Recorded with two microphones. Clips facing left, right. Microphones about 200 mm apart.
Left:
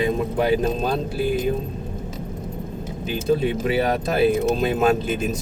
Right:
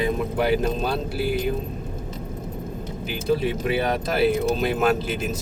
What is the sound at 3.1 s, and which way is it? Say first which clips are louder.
Speech: left 2 dB; 25° left (ahead or behind).